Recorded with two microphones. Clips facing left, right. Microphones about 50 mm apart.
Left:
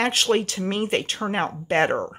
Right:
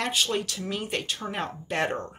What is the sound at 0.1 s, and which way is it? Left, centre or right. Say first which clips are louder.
Speech: left 6 dB; left.